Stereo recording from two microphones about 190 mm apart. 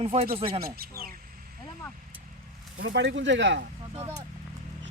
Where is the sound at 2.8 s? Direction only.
70° right (ahead or behind).